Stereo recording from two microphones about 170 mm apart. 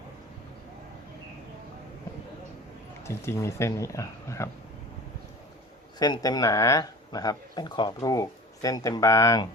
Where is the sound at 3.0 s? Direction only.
15° left (ahead or behind).